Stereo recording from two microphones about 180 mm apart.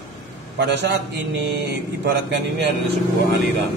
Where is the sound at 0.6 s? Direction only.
75° right (ahead or behind).